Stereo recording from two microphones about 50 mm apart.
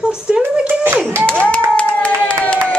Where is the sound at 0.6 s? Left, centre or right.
Right.